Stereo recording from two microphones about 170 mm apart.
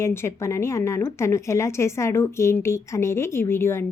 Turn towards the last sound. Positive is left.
turn(degrees=15)  # may be behind; listen again after turning